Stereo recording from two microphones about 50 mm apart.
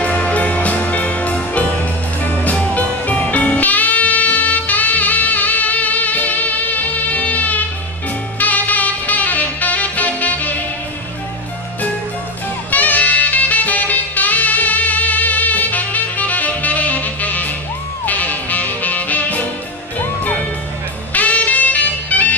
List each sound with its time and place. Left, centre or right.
0.0 s music: left
1.8 s music: left
2.5 s music: left
8.4 s saxophone: left
12.7 s music: left
21.1 s music: left